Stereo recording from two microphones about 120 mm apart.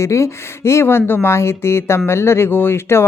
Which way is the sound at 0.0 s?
25° left (ahead or behind).